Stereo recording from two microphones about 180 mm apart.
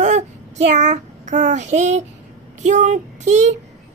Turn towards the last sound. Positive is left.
turn(degrees=-40)  # may be behind; listen again after turning